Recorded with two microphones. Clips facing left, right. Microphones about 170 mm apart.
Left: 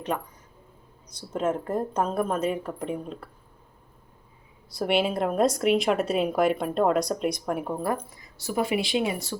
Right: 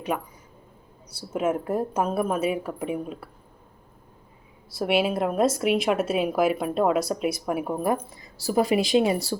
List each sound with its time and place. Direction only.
0.1 s speech: 10° right (ahead or behind)
4.7 s speech: 5° right (ahead or behind)
8.2 s speech: 35° right (ahead or behind)